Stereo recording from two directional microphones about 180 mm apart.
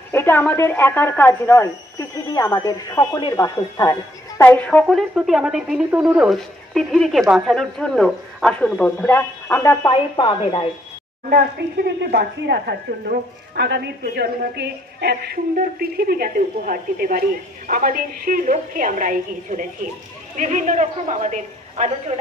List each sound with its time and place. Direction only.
0.1 s speech: 10° left (ahead or behind)
9.9 s speech: 25° left (ahead or behind)
11.2 s a woman's voice: 55° right (ahead or behind); by 22.2 s 40° right (ahead or behind)